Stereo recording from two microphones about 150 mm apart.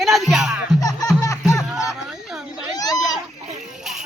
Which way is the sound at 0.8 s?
25° left (ahead or behind).